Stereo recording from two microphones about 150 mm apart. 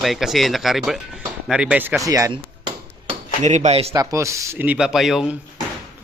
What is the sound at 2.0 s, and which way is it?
Speech, 20° right (ahead or behind).